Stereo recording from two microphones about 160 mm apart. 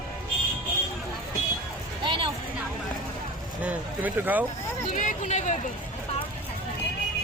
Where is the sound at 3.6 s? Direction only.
10° right (ahead or behind).